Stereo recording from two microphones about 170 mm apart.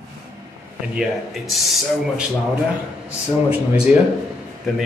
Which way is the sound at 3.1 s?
10° right (ahead or behind).